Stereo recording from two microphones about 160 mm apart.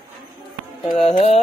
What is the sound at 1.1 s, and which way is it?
Speech, 40° left (ahead or behind).